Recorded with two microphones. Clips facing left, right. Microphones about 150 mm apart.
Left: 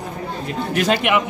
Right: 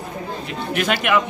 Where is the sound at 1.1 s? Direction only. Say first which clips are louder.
Right 3 dB; 20° left (ahead or behind).